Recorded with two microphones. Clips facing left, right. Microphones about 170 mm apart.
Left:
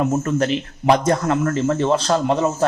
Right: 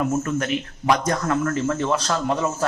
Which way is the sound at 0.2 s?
35° left (ahead or behind).